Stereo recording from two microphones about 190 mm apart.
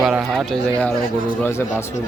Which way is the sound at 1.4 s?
15° left (ahead or behind).